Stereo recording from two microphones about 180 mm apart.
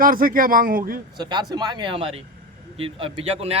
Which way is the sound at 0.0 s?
50° right (ahead or behind).